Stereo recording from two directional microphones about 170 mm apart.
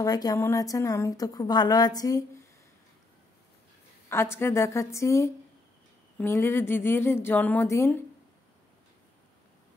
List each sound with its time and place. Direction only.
0.0 s a woman's voice: 20° left (ahead or behind)
4.1 s a woman's voice: 15° left (ahead or behind)